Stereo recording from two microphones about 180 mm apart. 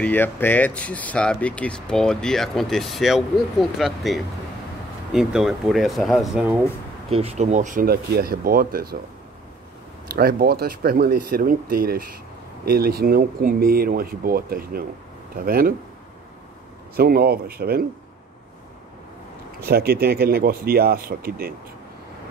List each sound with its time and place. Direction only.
0.0 s speech: 10° left (ahead or behind); by 6.6 s 5° right (ahead or behind)
7.1 s speech: 35° right (ahead or behind); by 8.9 s 55° right (ahead or behind)
10.1 s speech: 60° right (ahead or behind)
16.9 s speech: 60° right (ahead or behind)
19.7 s speech: 60° right (ahead or behind)